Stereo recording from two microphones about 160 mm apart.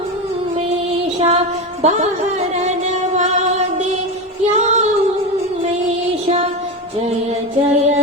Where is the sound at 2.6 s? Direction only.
45° right (ahead or behind).